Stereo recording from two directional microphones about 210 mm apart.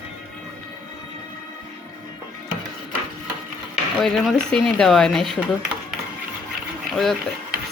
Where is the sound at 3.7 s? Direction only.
Centre (ahead or behind).